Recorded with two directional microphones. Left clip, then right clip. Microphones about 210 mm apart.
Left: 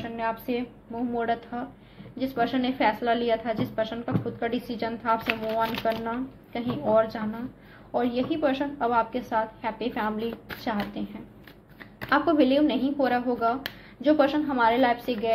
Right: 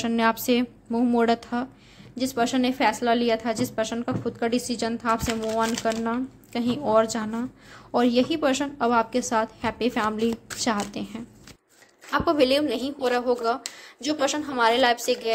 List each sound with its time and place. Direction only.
0.0 s a woman's voice: 55° right (ahead or behind)
12.3 s a woman's voice: 40° right (ahead or behind)